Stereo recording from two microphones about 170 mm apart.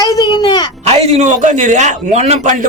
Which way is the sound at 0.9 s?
40° right (ahead or behind).